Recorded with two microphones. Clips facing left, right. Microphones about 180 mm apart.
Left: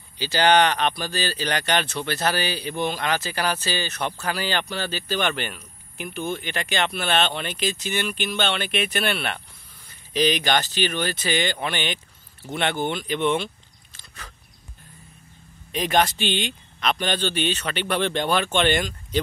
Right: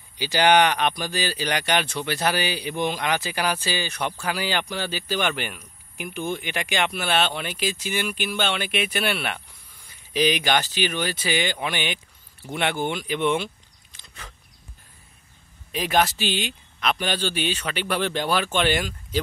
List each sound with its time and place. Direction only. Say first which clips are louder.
0.2 s speech: even; 10° right (ahead or behind)
13.9 s a sound: even; 20° right (ahead or behind)
15.7 s speech: left 1 dB; 5° right (ahead or behind)